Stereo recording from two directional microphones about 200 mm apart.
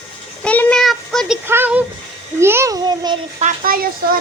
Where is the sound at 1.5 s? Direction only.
10° right (ahead or behind).